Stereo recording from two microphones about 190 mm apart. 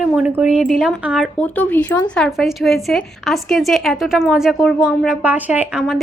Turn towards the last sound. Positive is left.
turn(degrees=0)  # may be behind; listen again after turning